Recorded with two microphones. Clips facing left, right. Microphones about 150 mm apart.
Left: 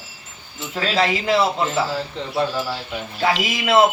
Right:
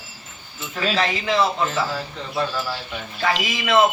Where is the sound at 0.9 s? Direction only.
10° left (ahead or behind).